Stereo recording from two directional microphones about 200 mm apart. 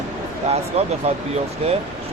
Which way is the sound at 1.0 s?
30° right (ahead or behind).